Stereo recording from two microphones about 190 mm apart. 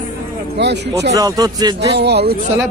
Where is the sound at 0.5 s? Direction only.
65° right (ahead or behind).